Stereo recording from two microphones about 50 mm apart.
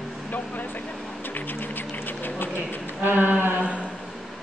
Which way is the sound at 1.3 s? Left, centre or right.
Left.